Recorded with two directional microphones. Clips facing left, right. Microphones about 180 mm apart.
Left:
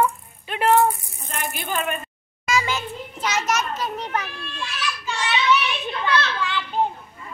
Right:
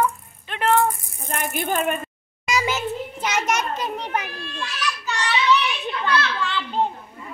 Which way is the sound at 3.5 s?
30° right (ahead or behind).